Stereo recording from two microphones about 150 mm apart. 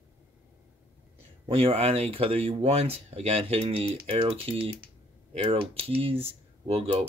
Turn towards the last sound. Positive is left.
turn(degrees=-40)  # may be behind; listen again after turning